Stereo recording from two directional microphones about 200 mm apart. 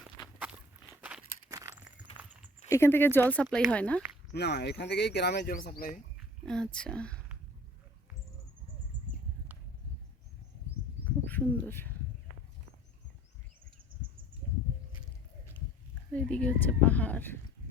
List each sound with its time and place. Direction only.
1.0 s walk: 10° right (ahead or behind)
2.1 s a sound: 5° right (ahead or behind)
2.6 s speech: 15° left (ahead or behind)
4.4 s speech: 55° left (ahead or behind)
6.4 s speech: 5° left (ahead or behind)
11.0 s bird: 10° left (ahead or behind)
13.9 s a sound: 25° right (ahead or behind)
16.1 s speech: 5° left (ahead or behind)